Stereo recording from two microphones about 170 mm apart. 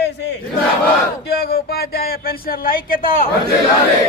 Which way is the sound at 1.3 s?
70° left (ahead or behind).